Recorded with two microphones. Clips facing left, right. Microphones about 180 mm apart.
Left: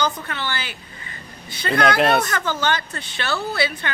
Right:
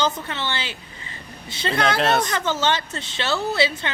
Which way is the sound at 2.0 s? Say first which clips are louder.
Left 1 dB; 10° left (ahead or behind).